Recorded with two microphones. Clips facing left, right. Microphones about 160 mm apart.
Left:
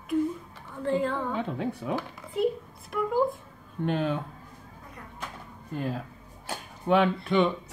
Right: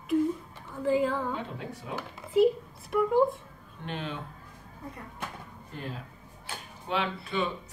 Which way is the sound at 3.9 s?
45° left (ahead or behind).